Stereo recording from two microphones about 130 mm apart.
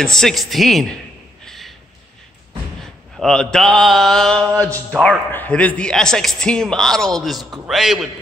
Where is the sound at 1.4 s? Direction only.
Centre (ahead or behind).